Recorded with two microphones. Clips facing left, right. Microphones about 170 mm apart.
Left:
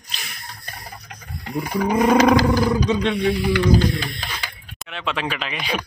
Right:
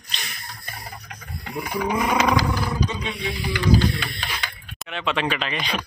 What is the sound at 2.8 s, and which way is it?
Speech, 65° left (ahead or behind).